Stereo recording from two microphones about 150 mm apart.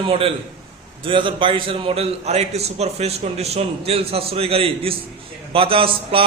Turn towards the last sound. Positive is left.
turn(degrees=-40)  # may be behind; listen again after turning